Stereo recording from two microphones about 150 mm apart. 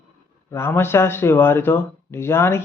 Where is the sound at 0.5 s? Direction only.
15° left (ahead or behind).